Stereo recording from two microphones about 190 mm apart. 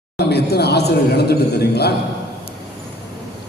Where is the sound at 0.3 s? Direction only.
60° left (ahead or behind).